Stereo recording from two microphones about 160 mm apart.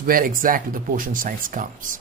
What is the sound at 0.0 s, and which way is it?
Speech, 60° right (ahead or behind).